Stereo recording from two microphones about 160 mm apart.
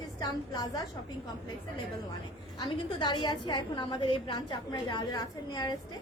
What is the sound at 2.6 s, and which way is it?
A woman's voice, 30° left (ahead or behind).